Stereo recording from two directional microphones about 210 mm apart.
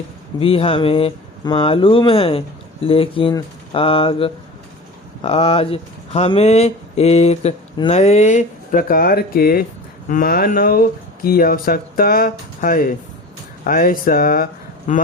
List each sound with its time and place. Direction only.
0.3 s speech: 25° left (ahead or behind)